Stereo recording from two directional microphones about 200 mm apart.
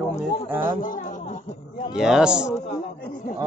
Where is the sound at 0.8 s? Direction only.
40° left (ahead or behind).